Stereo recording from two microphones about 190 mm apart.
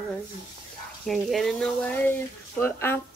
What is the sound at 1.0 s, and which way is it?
Speech, centre (ahead or behind).